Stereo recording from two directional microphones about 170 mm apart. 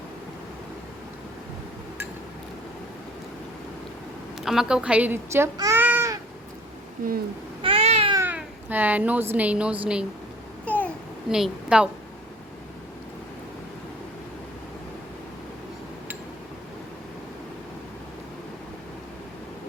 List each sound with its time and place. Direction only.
4.4 s speech: 5° right (ahead or behind)
7.6 s cat: 35° right (ahead or behind)
8.1 s a woman's voice: 10° right (ahead or behind)
10.7 s babbling: 10° left (ahead or behind)
11.3 s a woman's voice: 5° right (ahead or behind)